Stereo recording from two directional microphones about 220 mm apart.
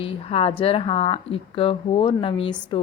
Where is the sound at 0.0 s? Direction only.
25° left (ahead or behind).